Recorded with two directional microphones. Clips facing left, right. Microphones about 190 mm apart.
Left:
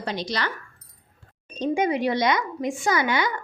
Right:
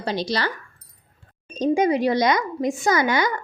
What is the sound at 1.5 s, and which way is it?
A woman's voice, 40° right (ahead or behind).